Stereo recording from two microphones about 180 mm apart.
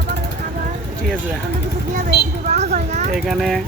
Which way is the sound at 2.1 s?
65° left (ahead or behind).